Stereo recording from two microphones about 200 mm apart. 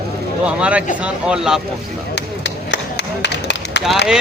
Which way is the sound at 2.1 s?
60° left (ahead or behind).